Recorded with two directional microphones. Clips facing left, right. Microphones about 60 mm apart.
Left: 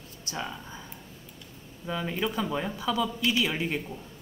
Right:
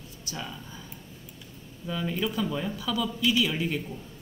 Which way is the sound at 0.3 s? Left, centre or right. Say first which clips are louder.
Left 3 dB; left.